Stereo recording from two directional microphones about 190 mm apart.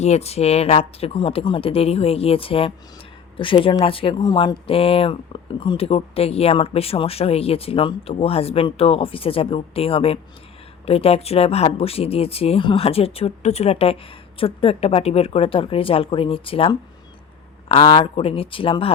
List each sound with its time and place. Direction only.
0.0 s speech: 35° left (ahead or behind)